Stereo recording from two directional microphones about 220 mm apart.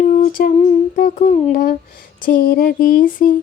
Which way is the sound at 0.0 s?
35° left (ahead or behind).